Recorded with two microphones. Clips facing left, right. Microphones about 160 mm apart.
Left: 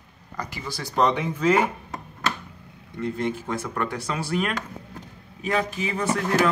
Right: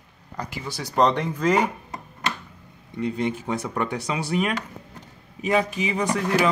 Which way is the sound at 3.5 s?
20° right (ahead or behind).